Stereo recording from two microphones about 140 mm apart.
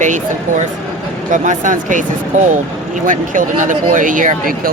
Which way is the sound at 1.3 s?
65° right (ahead or behind).